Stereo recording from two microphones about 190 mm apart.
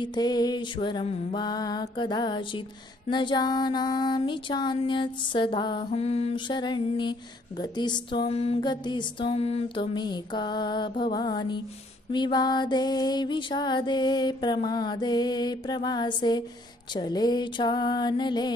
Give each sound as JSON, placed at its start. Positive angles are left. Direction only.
{"t": 0.0, "sound": "music", "side_deg": 20}